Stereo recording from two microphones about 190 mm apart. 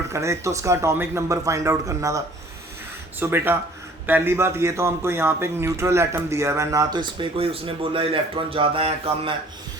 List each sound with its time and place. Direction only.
0.1 s a man's voice: 15° right (ahead or behind)
7.2 s speech: 30° right (ahead or behind)